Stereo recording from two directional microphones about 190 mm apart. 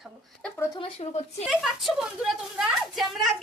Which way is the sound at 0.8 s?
30° left (ahead or behind).